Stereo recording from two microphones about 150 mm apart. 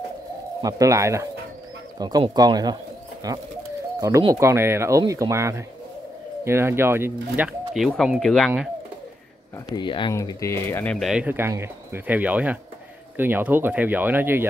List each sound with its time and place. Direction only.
0.6 s speech: 25° right (ahead or behind); by 8.6 s centre (ahead or behind)
9.8 s speech: 30° left (ahead or behind)
10.1 s speech: 20° left (ahead or behind)
11.0 s speech: centre (ahead or behind)
11.2 s speech: 15° right (ahead or behind)